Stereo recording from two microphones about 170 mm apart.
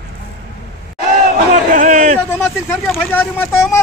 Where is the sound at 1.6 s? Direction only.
50° right (ahead or behind).